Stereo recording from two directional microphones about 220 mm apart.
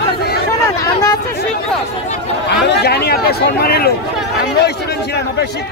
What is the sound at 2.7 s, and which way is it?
Speech, 45° left (ahead or behind).